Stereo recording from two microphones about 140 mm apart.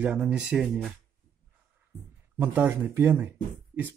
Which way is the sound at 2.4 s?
10° right (ahead or behind).